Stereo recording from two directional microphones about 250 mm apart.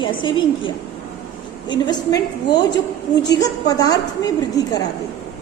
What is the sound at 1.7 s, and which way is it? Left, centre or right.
A woman's voice, centre.